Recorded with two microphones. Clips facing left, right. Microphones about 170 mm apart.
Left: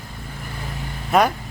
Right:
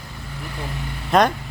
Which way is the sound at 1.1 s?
5° left (ahead or behind).